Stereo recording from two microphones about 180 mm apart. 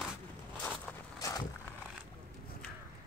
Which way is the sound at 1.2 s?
20° left (ahead or behind).